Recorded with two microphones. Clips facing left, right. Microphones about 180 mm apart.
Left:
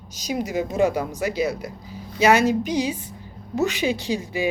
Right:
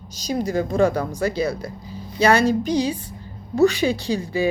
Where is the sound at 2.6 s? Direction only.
15° left (ahead or behind).